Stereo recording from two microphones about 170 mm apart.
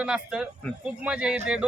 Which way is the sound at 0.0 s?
5° right (ahead or behind).